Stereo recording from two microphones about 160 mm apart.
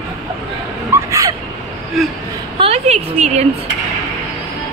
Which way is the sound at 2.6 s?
40° right (ahead or behind).